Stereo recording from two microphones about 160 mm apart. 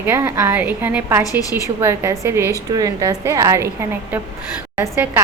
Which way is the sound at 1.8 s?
15° right (ahead or behind).